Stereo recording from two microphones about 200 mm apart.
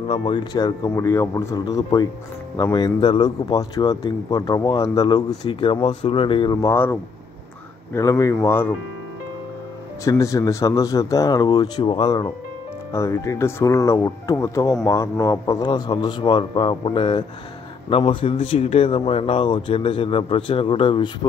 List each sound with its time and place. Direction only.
0.1 s speech: 25° left (ahead or behind)
10.0 s speech: 15° left (ahead or behind)